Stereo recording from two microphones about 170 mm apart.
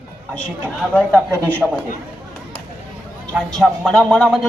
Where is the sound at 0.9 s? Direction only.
10° left (ahead or behind).